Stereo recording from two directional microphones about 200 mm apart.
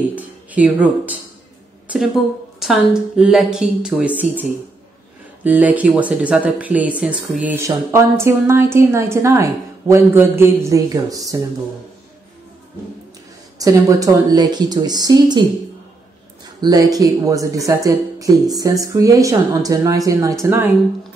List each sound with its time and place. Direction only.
0.1 s speech: 5° right (ahead or behind)
2.6 s speech: 5° right (ahead or behind)
13.6 s speech: 15° right (ahead or behind)
16.6 s speech: 20° right (ahead or behind)